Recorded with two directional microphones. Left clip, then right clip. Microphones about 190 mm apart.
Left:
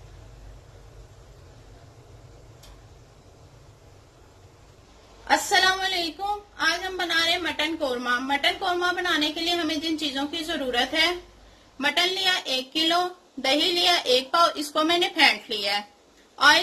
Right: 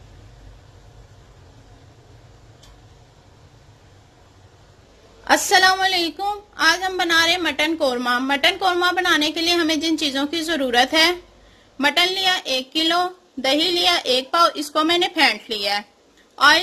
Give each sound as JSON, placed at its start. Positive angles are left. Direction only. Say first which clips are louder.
{"t": 5.2, "sound": "a woman's voice", "louder": "right 5 dB", "side_deg": -50}